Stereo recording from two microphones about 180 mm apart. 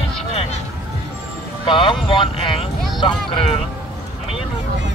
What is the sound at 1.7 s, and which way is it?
Speech, 30° left (ahead or behind).